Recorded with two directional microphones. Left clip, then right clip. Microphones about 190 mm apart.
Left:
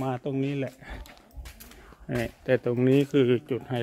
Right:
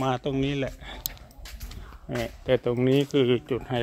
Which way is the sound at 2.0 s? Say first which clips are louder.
Right 1 dB; 20° left (ahead or behind).